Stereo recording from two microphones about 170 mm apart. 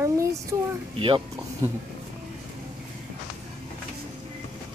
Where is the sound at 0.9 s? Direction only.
30° right (ahead or behind).